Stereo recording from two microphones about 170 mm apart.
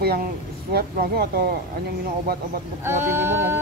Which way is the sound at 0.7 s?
65° right (ahead or behind).